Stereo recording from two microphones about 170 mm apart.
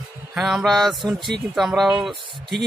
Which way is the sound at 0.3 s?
5° right (ahead or behind).